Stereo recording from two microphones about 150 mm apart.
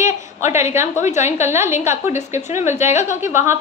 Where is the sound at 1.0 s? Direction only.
50° left (ahead or behind).